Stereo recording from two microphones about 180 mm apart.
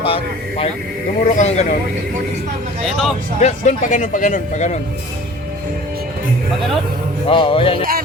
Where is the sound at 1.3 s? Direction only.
40° left (ahead or behind).